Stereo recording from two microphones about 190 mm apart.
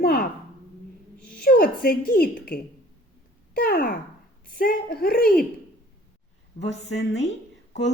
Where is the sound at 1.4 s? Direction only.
50° left (ahead or behind).